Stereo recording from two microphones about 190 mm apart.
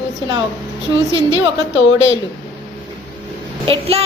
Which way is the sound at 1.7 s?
80° left.